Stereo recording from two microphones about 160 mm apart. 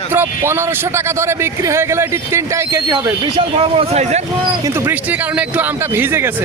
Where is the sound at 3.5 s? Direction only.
35° right (ahead or behind).